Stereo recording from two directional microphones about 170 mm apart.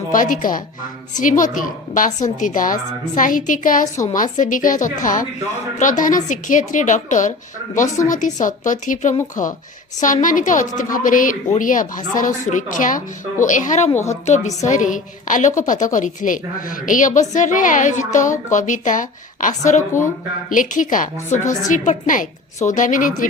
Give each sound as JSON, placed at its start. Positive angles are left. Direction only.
{"t": 0.1, "sound": "a woman's voice", "side_deg": 50}